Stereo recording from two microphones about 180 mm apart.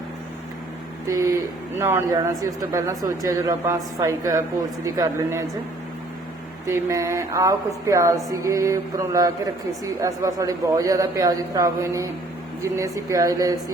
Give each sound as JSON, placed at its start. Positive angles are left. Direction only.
{"t": 1.0, "sound": "speech", "side_deg": -15}
{"t": 6.7, "sound": "speech", "side_deg": -15}